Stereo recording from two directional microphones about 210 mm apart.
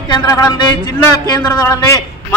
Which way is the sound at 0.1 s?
20° left (ahead or behind).